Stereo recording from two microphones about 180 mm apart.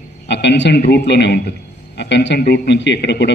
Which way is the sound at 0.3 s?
75° left (ahead or behind).